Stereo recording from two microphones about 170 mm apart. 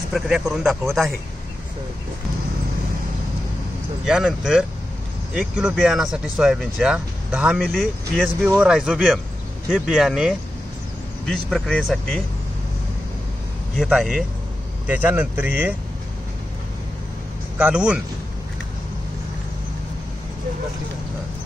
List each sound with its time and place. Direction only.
0.1 s speech: 5° right (ahead or behind)
4.0 s speech: 5° right (ahead or behind)
13.7 s speech: centre (ahead or behind)
17.6 s speech: 5° right (ahead or behind)